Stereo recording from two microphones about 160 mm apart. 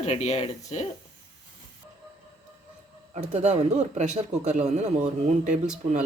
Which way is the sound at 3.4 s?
45° right (ahead or behind).